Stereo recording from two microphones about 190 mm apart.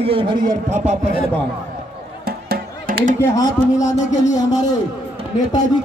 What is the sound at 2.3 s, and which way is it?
Music, 50° right (ahead or behind).